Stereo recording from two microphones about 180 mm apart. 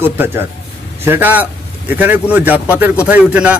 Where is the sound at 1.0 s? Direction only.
10° right (ahead or behind).